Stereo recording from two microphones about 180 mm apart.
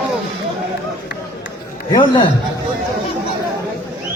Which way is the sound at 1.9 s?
25° left (ahead or behind).